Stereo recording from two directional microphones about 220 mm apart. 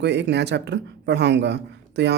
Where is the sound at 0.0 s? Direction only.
50° right (ahead or behind).